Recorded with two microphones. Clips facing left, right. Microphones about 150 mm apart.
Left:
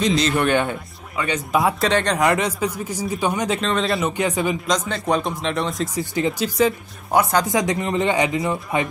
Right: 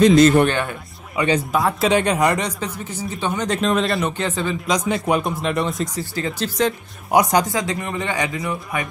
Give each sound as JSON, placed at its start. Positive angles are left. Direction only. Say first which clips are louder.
{"t": 0.0, "sound": "speech", "louder": "right 8 dB", "side_deg": -50}
{"t": 0.5, "sound": "speech", "louder": "left 3 dB", "side_deg": 20}
{"t": 1.2, "sound": "speech", "louder": "right 5 dB", "side_deg": -15}
{"t": 1.5, "sound": "speech", "louder": "left 4 dB", "side_deg": 0}
{"t": 4.2, "sound": "speech", "louder": "left 2 dB", "side_deg": 10}
{"t": 4.6, "sound": "speech", "louder": "right 2 dB", "side_deg": -10}
{"t": 5.9, "sound": "speech", "louder": "left 3 dB", "side_deg": 15}
{"t": 7.1, "sound": "speech", "louder": "right 2 dB", "side_deg": -15}
{"t": 7.5, "sound": "speech", "louder": "left 4 dB", "side_deg": 20}